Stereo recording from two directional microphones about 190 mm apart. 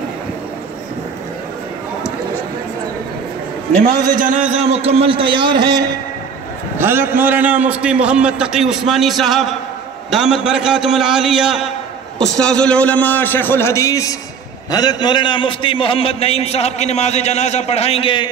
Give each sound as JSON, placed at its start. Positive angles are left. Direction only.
{"t": 3.8, "sound": "a man's voice", "side_deg": -45}
{"t": 6.8, "sound": "a man's voice", "side_deg": -10}